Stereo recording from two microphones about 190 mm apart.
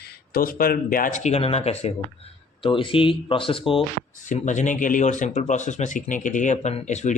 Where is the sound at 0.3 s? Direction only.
50° left (ahead or behind); by 3.8 s 30° left (ahead or behind).